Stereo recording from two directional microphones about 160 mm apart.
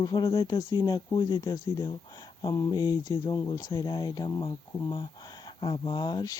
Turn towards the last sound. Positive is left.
turn(degrees=25)  # may be behind; listen again after turning